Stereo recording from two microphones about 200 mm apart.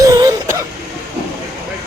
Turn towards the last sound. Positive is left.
turn(degrees=-20)  # may be behind; listen again after turning